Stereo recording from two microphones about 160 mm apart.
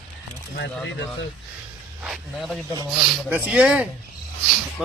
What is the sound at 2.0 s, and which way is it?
A man's voice, 5° right (ahead or behind).